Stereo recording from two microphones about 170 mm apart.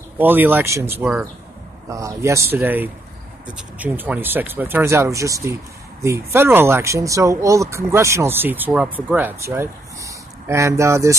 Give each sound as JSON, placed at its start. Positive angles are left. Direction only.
{"t": 0.2, "sound": "speech", "side_deg": -10}